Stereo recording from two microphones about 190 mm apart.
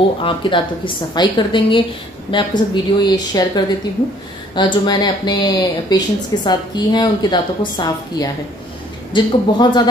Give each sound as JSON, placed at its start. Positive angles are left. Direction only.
{"t": 0.2, "sound": "speech", "side_deg": 25}